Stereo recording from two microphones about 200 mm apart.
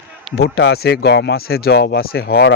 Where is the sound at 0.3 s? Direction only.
55° left (ahead or behind).